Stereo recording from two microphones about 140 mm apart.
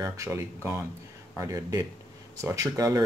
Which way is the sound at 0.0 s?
20° right (ahead or behind).